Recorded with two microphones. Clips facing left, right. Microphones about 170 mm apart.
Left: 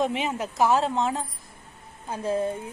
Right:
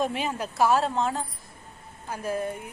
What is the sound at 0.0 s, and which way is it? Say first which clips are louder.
A woman's voice: left 2 dB; 20° left (ahead or behind).